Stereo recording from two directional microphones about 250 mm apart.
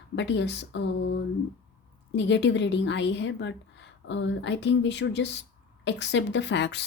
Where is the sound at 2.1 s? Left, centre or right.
Left.